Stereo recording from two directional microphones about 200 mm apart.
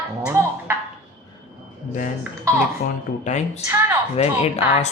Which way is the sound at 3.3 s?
35° left (ahead or behind).